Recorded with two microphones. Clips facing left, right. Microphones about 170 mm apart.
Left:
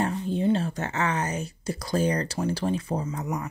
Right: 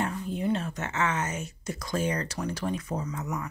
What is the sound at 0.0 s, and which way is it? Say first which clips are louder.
Speech: left 4 dB; 30° left (ahead or behind).